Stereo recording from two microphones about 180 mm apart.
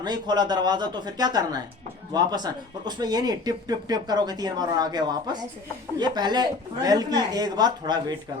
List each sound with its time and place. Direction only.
0.0 s speech: 25° right (ahead or behind)